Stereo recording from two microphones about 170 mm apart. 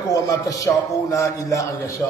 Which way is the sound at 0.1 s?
20° left (ahead or behind).